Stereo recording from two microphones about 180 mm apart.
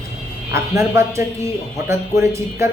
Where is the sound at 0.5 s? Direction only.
15° right (ahead or behind).